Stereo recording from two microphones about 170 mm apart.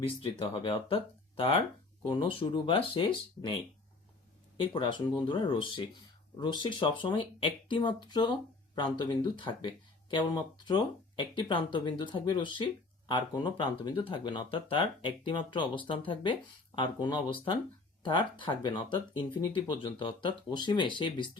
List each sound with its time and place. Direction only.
0.2 s speech: 30° left (ahead or behind)
4.5 s speech: 30° left (ahead or behind)